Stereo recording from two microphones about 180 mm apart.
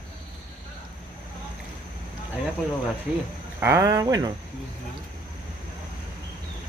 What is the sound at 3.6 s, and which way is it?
Speech, 15° right (ahead or behind).